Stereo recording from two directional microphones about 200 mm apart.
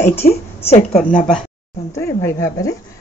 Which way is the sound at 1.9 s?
15° left (ahead or behind).